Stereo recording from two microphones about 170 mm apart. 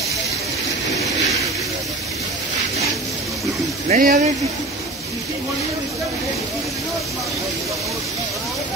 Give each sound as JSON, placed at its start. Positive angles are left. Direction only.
{"t": 3.9, "sound": "speech", "side_deg": -50}